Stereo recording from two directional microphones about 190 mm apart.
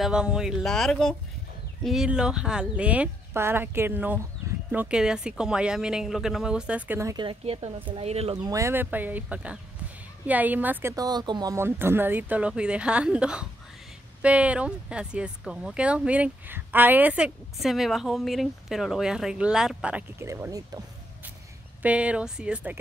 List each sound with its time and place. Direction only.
0.0 s speech: 5° right (ahead or behind)
7.2 s speech: 30° right (ahead or behind)
8.5 s speech: 15° right (ahead or behind)
21.8 s speech: 5° right (ahead or behind)